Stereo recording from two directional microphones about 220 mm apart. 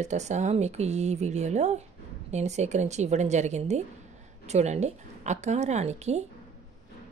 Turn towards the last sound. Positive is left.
turn(degrees=-30)  # may be behind; listen again after turning